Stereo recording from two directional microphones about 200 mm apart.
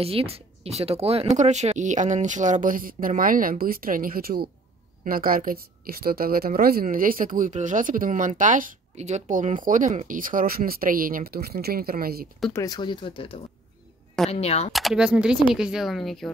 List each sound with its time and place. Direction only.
0.0 s a woman's voice: 30° right (ahead or behind); by 12.3 s 50° right (ahead or behind)
12.5 s speech: 20° left (ahead or behind)
14.7 s speech: centre (ahead or behind)